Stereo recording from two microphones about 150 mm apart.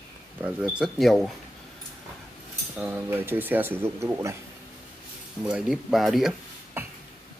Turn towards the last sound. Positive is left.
turn(degrees=-15)  # may be behind; listen again after turning